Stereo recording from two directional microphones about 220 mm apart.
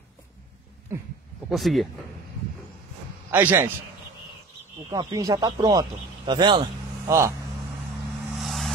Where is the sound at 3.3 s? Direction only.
10° right (ahead or behind).